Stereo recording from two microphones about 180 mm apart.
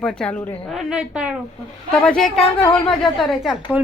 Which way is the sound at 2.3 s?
35° left (ahead or behind).